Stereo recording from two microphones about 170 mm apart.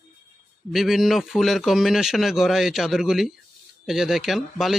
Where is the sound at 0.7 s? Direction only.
Centre (ahead or behind).